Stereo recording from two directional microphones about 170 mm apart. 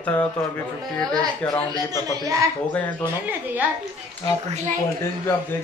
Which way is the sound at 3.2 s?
10° right (ahead or behind).